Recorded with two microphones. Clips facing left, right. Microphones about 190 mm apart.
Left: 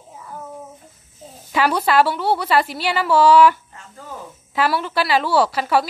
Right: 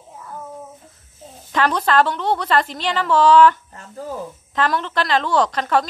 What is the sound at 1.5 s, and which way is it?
A woman's voice, 10° left (ahead or behind).